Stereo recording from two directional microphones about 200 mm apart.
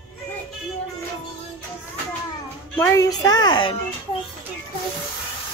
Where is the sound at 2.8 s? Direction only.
15° left (ahead or behind).